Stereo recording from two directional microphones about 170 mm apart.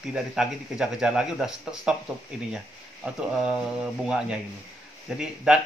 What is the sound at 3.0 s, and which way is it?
Speech, 5° right (ahead or behind).